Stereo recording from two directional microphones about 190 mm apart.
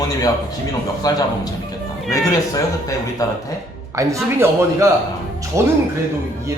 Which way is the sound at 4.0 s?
15° right (ahead or behind).